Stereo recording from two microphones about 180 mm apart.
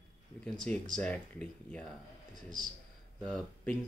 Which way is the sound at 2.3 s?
45° right (ahead or behind).